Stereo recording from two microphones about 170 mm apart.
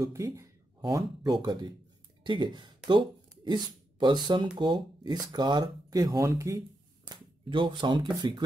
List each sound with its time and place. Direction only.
0.0 s speech: 15° right (ahead or behind)
7.1 s speech: 30° right (ahead or behind)